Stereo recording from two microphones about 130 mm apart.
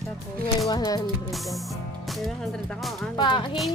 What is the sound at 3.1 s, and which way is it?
Speech, 35° left (ahead or behind).